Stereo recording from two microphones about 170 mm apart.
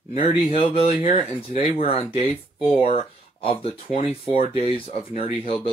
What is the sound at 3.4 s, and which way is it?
Speech, 35° left (ahead or behind).